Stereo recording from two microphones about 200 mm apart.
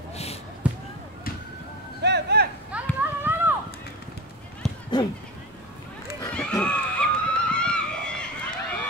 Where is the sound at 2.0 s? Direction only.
55° right (ahead or behind).